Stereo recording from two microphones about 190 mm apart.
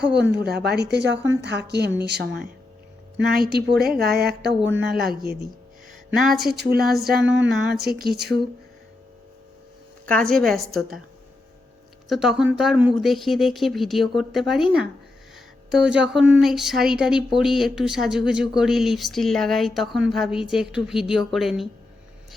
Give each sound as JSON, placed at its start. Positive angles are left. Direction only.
{"t": 0.0, "sound": "speech", "side_deg": -5}
{"t": 0.3, "sound": "speech", "side_deg": -60}
{"t": 3.8, "sound": "speech", "side_deg": -55}
{"t": 6.1, "sound": "speech", "side_deg": 0}
{"t": 6.5, "sound": "speech", "side_deg": -55}
{"t": 6.8, "sound": "speech", "side_deg": 0}
{"t": 7.1, "sound": "a sound", "side_deg": -70}
{"t": 7.4, "sound": "speech", "side_deg": -5}
{"t": 7.9, "sound": "speech", "side_deg": -55}
{"t": 10.1, "sound": "speech", "side_deg": 5}
{"t": 12.0, "sound": "speech", "side_deg": 0}